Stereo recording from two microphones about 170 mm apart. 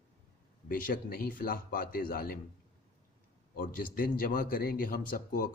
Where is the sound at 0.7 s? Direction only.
55° left (ahead or behind).